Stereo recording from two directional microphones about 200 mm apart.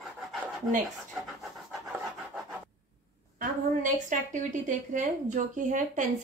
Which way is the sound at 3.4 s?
40° right (ahead or behind).